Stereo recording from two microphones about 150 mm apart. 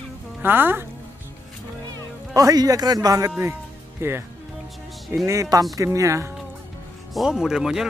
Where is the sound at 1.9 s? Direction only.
25° right (ahead or behind).